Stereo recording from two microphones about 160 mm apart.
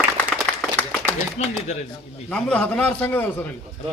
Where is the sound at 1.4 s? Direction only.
45° left (ahead or behind).